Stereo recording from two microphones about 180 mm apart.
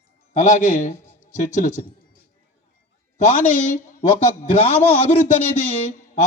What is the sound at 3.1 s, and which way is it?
Speech, 45° left (ahead or behind).